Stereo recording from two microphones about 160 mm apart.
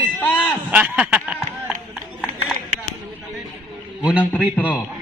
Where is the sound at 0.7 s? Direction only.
10° right (ahead or behind).